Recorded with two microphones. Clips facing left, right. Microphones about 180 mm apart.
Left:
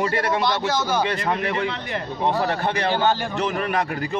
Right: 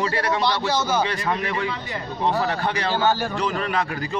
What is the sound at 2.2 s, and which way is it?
A man's voice, 15° left (ahead or behind).